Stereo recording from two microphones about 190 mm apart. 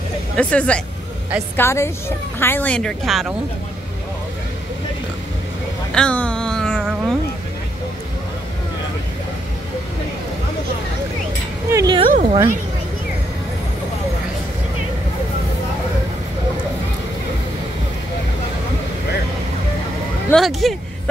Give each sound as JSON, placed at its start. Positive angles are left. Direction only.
{"t": 0.4, "sound": "a woman's voice", "side_deg": 5}
{"t": 5.9, "sound": "a sound", "side_deg": 5}
{"t": 11.7, "sound": "speech", "side_deg": -20}
{"t": 12.1, "sound": "a woman's voice", "side_deg": -40}
{"t": 20.2, "sound": "speech", "side_deg": 0}